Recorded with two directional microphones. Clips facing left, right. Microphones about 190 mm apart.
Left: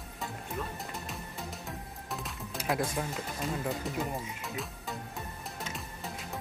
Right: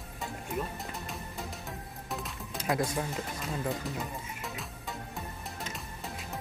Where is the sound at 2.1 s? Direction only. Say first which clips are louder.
Right 1 dB; centre (ahead or behind).